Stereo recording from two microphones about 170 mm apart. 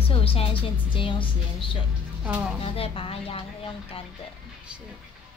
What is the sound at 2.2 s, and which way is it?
Speech, 10° right (ahead or behind).